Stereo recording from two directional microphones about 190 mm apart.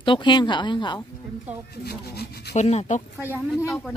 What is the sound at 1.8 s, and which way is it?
Speech, 55° left (ahead or behind).